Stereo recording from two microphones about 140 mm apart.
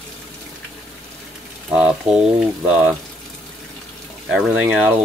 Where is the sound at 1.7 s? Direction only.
5° right (ahead or behind).